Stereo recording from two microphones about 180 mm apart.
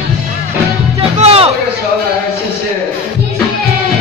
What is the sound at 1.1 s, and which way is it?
Music, 35° right (ahead or behind).